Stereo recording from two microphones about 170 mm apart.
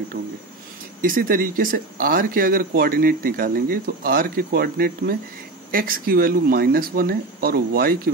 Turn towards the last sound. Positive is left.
turn(degrees=-60)  # may be behind; listen again after turning